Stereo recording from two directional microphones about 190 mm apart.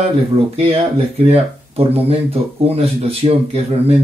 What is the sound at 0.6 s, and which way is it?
Speech, 30° right (ahead or behind).